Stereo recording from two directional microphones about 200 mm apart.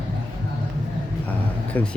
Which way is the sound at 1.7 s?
10° left (ahead or behind).